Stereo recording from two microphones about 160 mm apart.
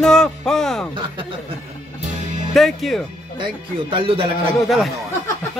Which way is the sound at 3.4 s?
35° right (ahead or behind).